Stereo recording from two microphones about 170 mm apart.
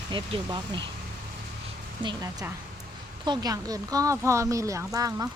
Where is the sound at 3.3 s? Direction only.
20° right (ahead or behind).